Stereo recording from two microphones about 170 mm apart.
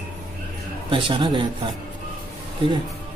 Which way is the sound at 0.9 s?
30° right (ahead or behind).